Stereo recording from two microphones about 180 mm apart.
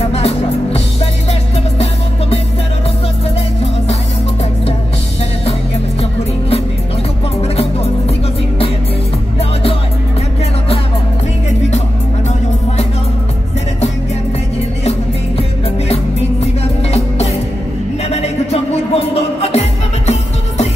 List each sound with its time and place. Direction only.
0.1 s music: 35° left (ahead or behind)
18.1 s music: 35° left (ahead or behind)